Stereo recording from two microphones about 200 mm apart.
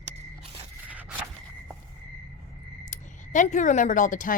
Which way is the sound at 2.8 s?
40° left (ahead or behind).